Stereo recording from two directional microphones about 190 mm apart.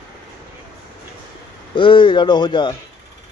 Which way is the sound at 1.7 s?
25° left (ahead or behind).